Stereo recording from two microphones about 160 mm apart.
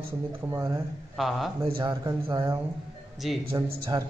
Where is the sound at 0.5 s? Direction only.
20° right (ahead or behind).